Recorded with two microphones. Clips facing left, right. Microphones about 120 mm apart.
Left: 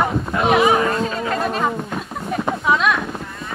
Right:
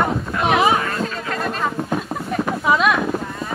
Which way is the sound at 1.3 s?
5° left (ahead or behind).